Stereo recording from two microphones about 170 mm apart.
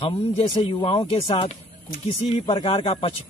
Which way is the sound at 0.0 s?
35° left (ahead or behind).